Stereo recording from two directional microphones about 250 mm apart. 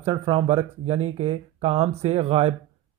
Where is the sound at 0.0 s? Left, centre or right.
Right.